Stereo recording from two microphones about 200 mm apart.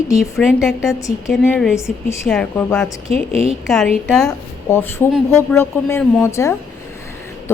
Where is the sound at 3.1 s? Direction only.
30° right (ahead or behind).